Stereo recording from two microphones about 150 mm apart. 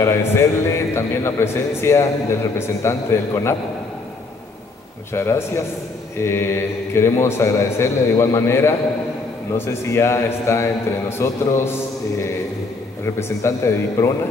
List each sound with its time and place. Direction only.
0.0 s a man's voice: 20° left (ahead or behind)
5.1 s a man's voice: 15° left (ahead or behind)